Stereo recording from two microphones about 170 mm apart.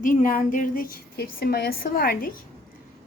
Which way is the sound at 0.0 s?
50° left (ahead or behind).